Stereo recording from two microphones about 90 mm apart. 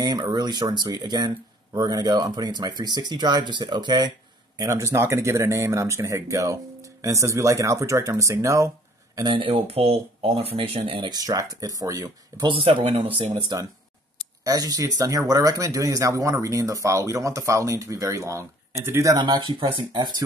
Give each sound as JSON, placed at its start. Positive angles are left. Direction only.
{"t": 0.0, "sound": "speech", "side_deg": -50}
{"t": 4.6, "sound": "speech", "side_deg": -35}
{"t": 9.2, "sound": "speech", "side_deg": -70}
{"t": 11.1, "sound": "speech", "side_deg": -45}
{"t": 12.4, "sound": "speech", "side_deg": -70}
{"t": 14.4, "sound": "speech", "side_deg": -45}
{"t": 19.1, "sound": "speech", "side_deg": -55}